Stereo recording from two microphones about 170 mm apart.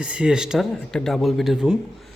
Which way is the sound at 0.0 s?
5° right (ahead or behind).